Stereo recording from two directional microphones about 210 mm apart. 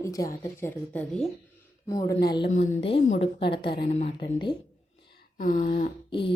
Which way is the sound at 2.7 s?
30° left (ahead or behind).